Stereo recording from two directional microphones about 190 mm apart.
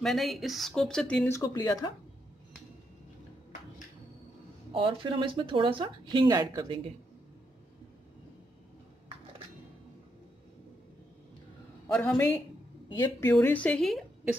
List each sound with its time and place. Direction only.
0.0 s speech: centre (ahead or behind)
1.4 s speech: 20° left (ahead or behind)
4.7 s speech: 25° right (ahead or behind)
11.9 s a woman's voice: 10° left (ahead or behind)